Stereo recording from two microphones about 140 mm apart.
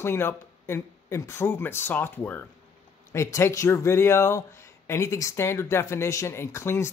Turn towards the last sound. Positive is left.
turn(degrees=20)  # may be behind; listen again after turning